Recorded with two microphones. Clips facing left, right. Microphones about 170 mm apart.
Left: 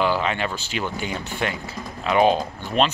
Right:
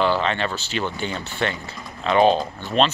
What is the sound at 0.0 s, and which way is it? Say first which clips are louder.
Speech: right 1 dB; 10° left (ahead or behind).